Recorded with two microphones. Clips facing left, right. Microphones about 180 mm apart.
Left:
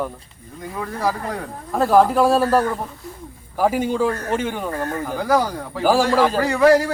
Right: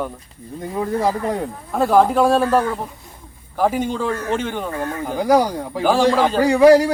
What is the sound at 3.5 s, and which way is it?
Speech, 5° left (ahead or behind).